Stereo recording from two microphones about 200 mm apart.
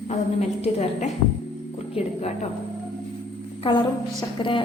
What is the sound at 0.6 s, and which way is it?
Speech, 30° left (ahead or behind).